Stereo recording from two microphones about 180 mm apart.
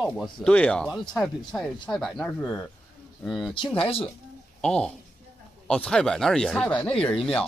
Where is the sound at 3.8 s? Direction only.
30° left (ahead or behind).